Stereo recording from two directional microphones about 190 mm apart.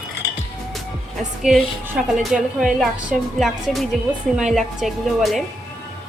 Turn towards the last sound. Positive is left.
turn(degrees=0)  # may be behind; listen again after turning